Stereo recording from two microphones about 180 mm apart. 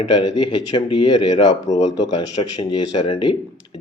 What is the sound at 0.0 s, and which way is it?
Speech, 25° left (ahead or behind).